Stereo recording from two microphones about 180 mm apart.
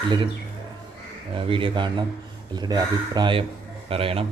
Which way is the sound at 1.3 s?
30° right (ahead or behind).